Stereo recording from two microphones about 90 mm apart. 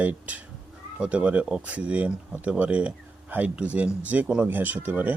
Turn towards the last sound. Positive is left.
turn(degrees=-20)  # may be behind; listen again after turning